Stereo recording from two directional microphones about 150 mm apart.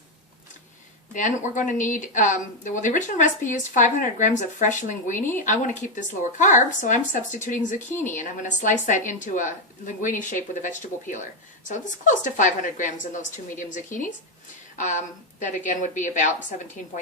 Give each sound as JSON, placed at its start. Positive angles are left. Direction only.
{"t": 1.1, "sound": "speech", "side_deg": 60}